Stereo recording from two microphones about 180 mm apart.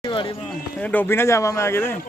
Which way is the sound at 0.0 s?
25° left (ahead or behind).